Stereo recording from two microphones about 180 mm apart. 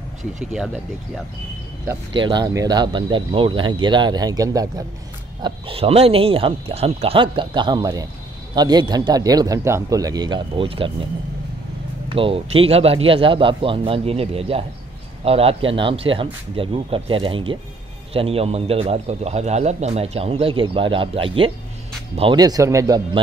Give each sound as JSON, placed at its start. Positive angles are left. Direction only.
{"t": 0.5, "sound": "speech", "side_deg": -5}
{"t": 2.1, "sound": "speech", "side_deg": -25}
{"t": 5.4, "sound": "a man's voice", "side_deg": -30}
{"t": 12.1, "sound": "a man's voice", "side_deg": -30}